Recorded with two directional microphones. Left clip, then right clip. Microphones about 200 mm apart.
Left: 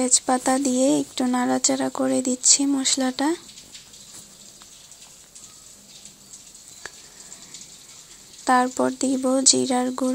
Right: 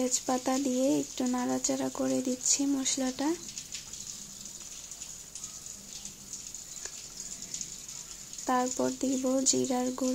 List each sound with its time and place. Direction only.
0.0 s speech: 20° left (ahead or behind)
8.5 s speech: 20° left (ahead or behind)